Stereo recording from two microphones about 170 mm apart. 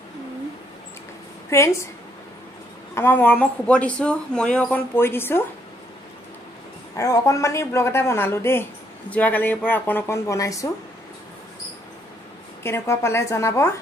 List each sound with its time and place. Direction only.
1.5 s speech: 15° left (ahead or behind)
2.9 s speech: 15° left (ahead or behind)
7.0 s speech: 20° left (ahead or behind)
12.6 s speech: 15° left (ahead or behind)